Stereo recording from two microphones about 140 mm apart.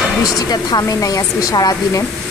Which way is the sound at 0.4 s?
30° left (ahead or behind).